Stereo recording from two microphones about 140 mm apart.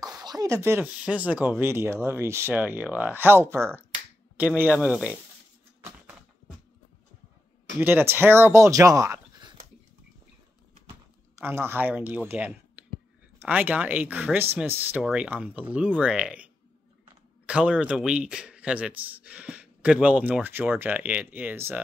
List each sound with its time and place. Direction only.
0.0 s a man's voice: 30° right (ahead or behind); by 5.2 s 10° right (ahead or behind)
7.8 s speech: 15° right (ahead or behind)
11.3 s a man's voice: 15° right (ahead or behind)
17.5 s a man's voice: 10° right (ahead or behind)